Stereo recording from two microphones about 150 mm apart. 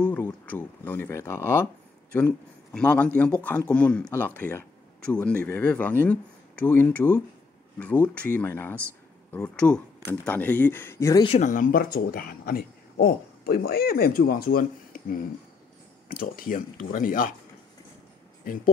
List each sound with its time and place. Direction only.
0.0 s a man's voice: 10° left (ahead or behind)
11.2 s speech: 50° left (ahead or behind); by 17.3 s 65° left (ahead or behind)